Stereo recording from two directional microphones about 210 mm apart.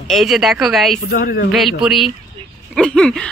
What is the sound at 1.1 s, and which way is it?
Speech, 45° left (ahead or behind).